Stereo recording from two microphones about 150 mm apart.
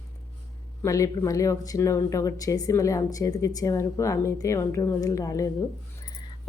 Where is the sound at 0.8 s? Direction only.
20° left (ahead or behind).